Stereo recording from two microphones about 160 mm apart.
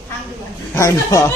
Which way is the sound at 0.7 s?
20° left (ahead or behind).